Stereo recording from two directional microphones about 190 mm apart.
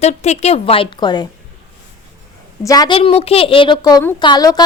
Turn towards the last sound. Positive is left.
turn(degrees=20)  # may be behind; listen again after turning